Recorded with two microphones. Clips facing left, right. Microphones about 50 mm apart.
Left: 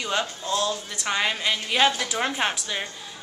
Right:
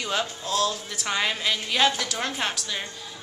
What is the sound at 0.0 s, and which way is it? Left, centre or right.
A woman's voice, centre.